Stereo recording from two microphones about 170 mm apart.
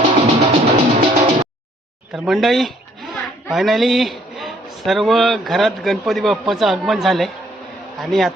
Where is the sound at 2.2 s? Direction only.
Centre (ahead or behind).